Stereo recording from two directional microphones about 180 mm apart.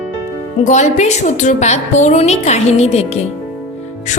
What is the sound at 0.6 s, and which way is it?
A woman's voice, 40° left (ahead or behind).